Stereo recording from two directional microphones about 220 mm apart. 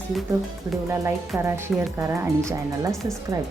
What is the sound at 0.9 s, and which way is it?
Speech, 10° right (ahead or behind).